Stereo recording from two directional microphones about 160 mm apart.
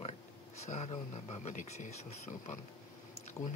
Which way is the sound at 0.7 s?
45° left (ahead or behind).